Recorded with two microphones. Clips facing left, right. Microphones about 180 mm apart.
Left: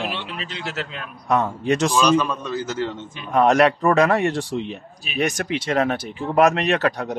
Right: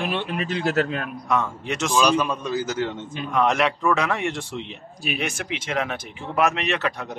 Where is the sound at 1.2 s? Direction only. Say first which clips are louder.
Left 6 dB; 35° left (ahead or behind).